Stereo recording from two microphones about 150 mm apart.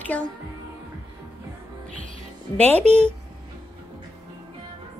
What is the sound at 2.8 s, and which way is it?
Speech, 45° right (ahead or behind).